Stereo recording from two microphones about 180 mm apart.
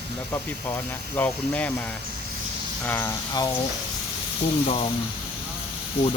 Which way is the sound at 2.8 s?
10° left (ahead or behind).